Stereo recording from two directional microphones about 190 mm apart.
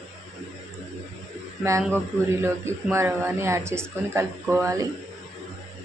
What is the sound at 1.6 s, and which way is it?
A woman's voice, 15° right (ahead or behind).